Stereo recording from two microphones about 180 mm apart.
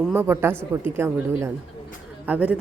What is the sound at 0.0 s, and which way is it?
A woman's voice, 10° right (ahead or behind).